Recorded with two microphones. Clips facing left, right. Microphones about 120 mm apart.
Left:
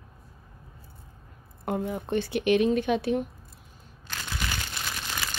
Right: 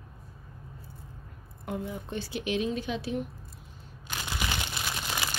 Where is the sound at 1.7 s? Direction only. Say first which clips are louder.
Left 6 dB; 60° left (ahead or behind).